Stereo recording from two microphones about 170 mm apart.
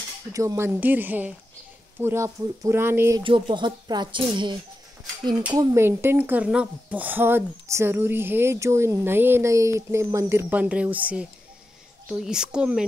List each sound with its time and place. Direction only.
0.3 s speech: 20° right (ahead or behind)
3.2 s speech: 30° right (ahead or behind)
5.5 s speech: 15° right (ahead or behind)